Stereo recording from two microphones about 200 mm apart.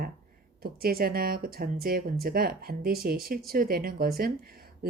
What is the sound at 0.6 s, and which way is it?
Speech, 50° right (ahead or behind).